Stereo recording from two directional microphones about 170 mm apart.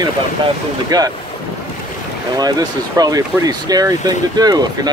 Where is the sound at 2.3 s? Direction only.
25° right (ahead or behind).